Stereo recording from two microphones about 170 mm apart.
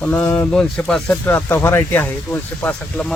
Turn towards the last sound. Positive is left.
turn(degrees=5)  # may be behind; listen again after turning